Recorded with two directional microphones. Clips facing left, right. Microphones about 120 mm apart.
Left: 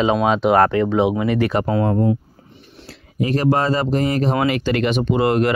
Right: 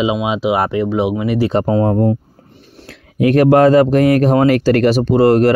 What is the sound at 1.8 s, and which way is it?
Speech, 40° right (ahead or behind).